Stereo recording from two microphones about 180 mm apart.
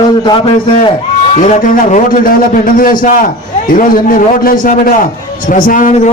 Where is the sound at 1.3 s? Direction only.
45° left (ahead or behind).